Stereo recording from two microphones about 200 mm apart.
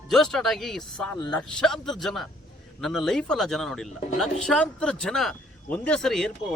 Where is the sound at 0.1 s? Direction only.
Centre (ahead or behind).